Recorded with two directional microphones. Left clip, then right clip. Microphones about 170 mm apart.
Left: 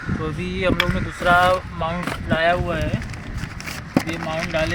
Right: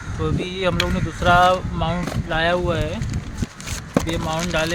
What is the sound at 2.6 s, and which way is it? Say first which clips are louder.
Speech: right 2 dB; 65° right (ahead or behind).